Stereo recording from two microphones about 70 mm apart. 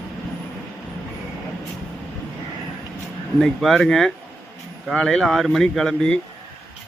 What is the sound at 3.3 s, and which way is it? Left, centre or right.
Speech, centre.